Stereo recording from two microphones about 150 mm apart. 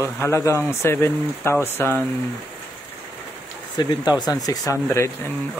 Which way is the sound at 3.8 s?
30° left (ahead or behind).